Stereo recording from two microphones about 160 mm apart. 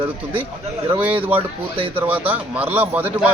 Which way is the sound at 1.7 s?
35° right (ahead or behind).